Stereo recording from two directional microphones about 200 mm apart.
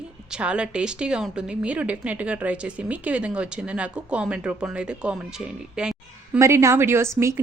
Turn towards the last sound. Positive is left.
turn(degrees=-15)  # may be behind; listen again after turning